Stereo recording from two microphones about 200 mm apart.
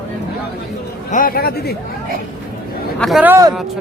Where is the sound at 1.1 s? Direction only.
45° left (ahead or behind).